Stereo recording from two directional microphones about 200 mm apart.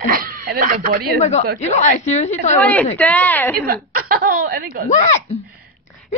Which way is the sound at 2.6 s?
10° left (ahead or behind).